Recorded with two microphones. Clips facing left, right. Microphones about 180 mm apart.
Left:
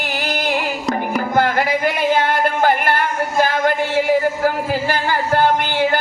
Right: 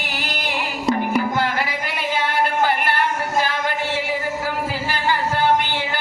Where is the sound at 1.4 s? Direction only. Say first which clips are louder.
Left 6 dB; 50° left (ahead or behind).